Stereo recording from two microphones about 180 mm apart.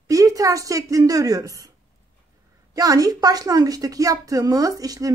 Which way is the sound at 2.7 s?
20° right (ahead or behind).